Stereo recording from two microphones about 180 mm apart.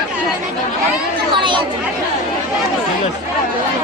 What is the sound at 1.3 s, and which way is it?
Chatter, 25° right (ahead or behind).